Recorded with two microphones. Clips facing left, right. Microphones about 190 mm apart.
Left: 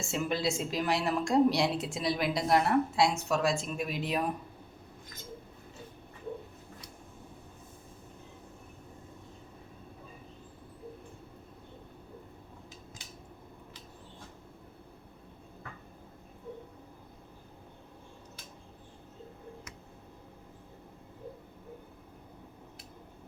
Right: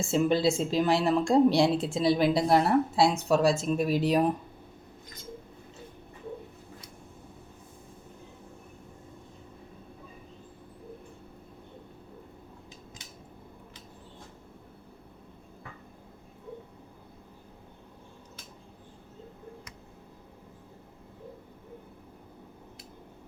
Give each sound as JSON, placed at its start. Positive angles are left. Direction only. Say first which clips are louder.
{"t": 0.0, "sound": "a woman's voice", "louder": "right 7 dB", "side_deg": -30}